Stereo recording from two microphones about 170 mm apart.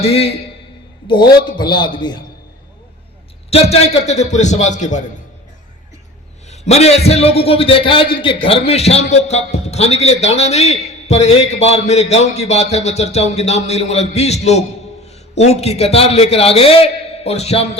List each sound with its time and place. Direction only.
0.0 s a man's voice: 35° left (ahead or behind)
3.5 s a man's voice: 35° left (ahead or behind)
6.5 s a man's voice: 40° left (ahead or behind)